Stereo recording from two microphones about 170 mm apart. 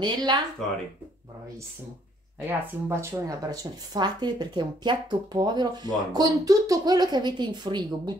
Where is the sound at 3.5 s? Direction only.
25° right (ahead or behind).